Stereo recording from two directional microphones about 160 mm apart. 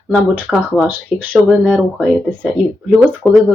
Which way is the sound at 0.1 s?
5° right (ahead or behind).